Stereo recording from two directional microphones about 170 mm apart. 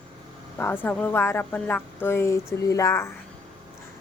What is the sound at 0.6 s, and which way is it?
Speech, 10° left (ahead or behind).